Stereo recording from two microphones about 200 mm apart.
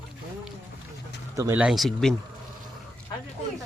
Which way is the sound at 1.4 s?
10° right (ahead or behind).